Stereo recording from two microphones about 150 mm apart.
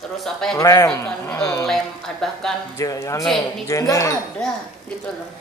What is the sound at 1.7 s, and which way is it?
Speech, centre (ahead or behind).